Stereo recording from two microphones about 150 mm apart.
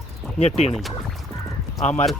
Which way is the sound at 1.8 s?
50° left (ahead or behind).